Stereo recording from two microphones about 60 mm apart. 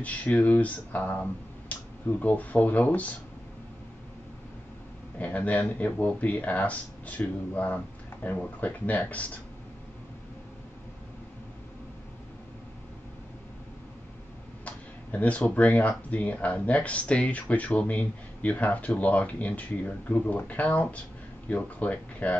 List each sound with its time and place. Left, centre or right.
0.0 s speech: left
5.2 s speech: left
14.6 s speech: left